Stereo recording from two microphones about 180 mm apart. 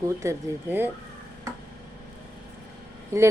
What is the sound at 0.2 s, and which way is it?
Speech, 15° right (ahead or behind).